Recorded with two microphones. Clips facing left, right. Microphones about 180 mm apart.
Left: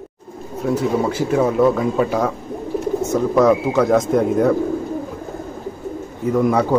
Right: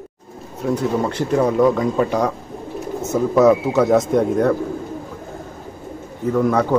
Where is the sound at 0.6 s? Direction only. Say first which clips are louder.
Left 1 dB; 5° left (ahead or behind).